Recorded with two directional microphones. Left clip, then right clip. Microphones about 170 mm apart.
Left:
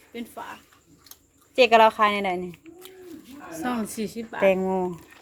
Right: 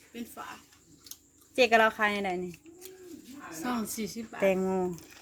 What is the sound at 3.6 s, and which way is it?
Speech, 45° left (ahead or behind).